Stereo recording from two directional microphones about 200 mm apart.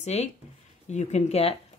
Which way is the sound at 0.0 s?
35° left (ahead or behind).